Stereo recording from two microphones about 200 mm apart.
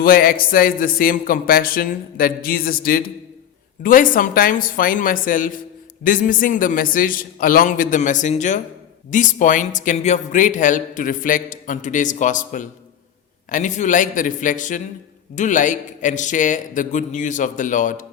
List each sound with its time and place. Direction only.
0.0 s a man's voice: 45° left (ahead or behind)